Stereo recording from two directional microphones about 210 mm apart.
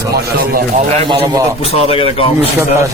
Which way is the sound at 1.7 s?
30° left (ahead or behind).